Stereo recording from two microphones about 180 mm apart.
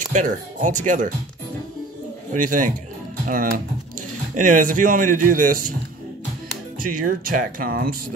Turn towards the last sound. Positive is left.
turn(degrees=-55)  # may be behind; listen again after turning